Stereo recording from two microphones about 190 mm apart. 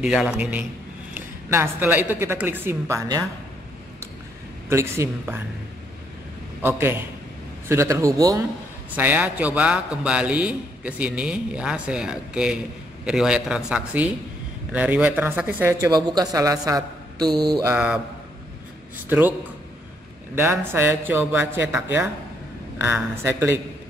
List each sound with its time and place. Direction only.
0.0 s a man's voice: 5° right (ahead or behind)
4.6 s speech: 15° right (ahead or behind)
6.6 s a man's voice: 10° right (ahead or behind)
17.7 s speech: 5° right (ahead or behind)
19.0 s speech: 10° right (ahead or behind)
20.3 s speech: 10° right (ahead or behind)